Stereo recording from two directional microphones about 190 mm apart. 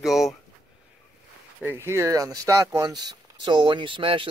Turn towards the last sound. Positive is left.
turn(degrees=-30)  # may be behind; listen again after turning